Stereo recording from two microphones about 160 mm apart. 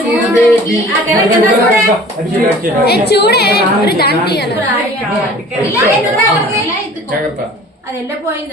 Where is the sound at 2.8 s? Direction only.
85° left.